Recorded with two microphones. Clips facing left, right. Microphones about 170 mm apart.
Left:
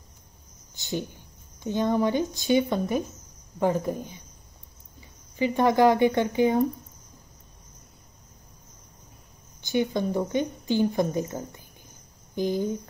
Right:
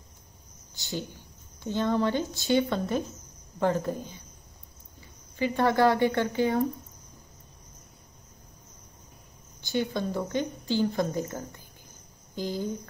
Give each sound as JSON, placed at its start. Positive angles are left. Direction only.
{"t": 0.7, "sound": "speech", "side_deg": 20}
{"t": 5.3, "sound": "speech", "side_deg": 15}
{"t": 9.6, "sound": "speech", "side_deg": 15}